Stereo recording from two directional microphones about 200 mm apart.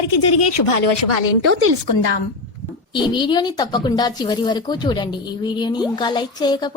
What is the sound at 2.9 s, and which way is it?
A woman's voice, 25° left (ahead or behind).